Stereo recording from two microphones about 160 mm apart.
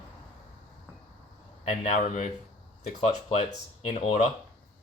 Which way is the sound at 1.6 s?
45° left (ahead or behind).